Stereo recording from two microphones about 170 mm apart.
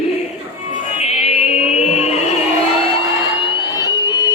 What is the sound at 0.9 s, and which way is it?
Music, 40° left (ahead or behind).